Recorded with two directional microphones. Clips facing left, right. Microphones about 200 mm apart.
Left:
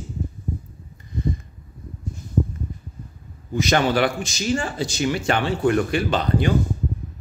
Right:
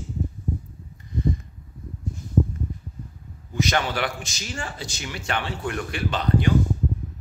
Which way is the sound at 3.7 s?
35° left (ahead or behind).